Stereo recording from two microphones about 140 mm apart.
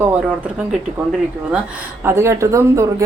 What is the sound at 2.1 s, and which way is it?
Speech, 20° right (ahead or behind).